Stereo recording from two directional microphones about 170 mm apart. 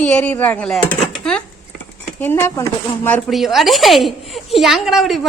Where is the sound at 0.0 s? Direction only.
10° left (ahead or behind).